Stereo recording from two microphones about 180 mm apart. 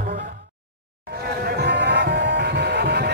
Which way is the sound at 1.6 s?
70° right (ahead or behind).